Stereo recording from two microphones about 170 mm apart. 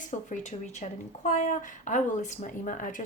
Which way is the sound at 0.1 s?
45° left (ahead or behind).